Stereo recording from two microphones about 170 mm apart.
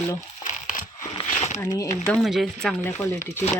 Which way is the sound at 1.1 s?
40° left (ahead or behind).